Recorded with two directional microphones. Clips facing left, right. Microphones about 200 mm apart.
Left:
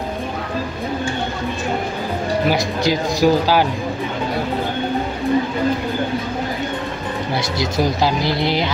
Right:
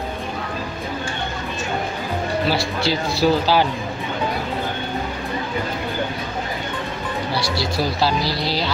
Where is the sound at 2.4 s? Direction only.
15° left (ahead or behind).